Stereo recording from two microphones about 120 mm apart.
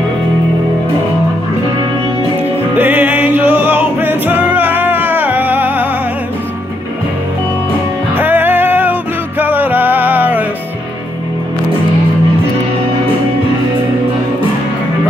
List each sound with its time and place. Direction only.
2.7 s music: 15° right (ahead or behind)
8.1 s music: 15° right (ahead or behind)